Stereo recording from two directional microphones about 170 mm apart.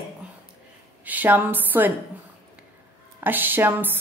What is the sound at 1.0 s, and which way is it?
Speech, 10° right (ahead or behind).